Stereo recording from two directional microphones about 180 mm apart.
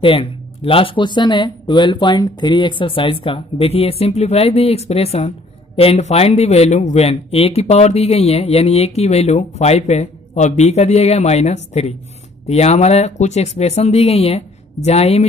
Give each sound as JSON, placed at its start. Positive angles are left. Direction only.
{"t": 0.0, "sound": "speech", "side_deg": 30}